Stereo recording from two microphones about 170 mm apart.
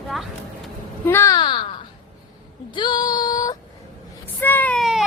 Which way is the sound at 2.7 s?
25° left (ahead or behind).